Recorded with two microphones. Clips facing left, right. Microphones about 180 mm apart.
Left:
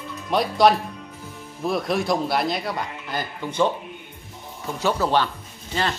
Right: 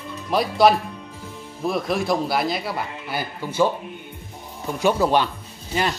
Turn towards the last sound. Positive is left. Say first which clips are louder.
# right 2 dB
turn(degrees=-15)  # may be behind; listen again after turning